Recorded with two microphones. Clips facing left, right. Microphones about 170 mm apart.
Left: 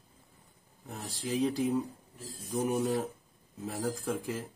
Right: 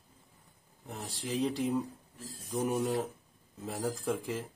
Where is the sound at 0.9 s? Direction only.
Centre (ahead or behind).